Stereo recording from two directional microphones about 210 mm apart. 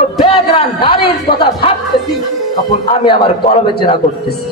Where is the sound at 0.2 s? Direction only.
25° left (ahead or behind).